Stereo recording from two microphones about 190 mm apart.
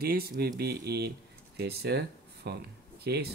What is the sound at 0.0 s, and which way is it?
Speech, 55° right (ahead or behind).